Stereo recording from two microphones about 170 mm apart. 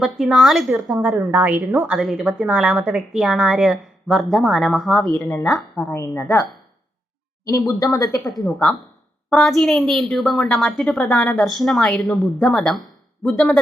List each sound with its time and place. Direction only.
0.0 s a woman's voice: centre (ahead or behind)
5.9 s speech: 15° left (ahead or behind)
7.9 s a woman's voice: 20° left (ahead or behind)
8.2 s a woman's voice: centre (ahead or behind)